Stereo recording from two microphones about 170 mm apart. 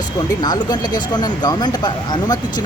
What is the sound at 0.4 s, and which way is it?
Speech, 25° left (ahead or behind).